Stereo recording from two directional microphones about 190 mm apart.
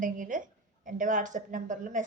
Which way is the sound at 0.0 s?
45° right (ahead or behind).